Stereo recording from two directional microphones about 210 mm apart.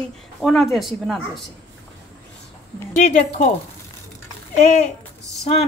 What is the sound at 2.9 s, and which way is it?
Speech, 35° left (ahead or behind).